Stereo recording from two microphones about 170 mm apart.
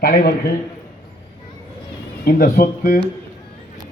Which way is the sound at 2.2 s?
60° left (ahead or behind).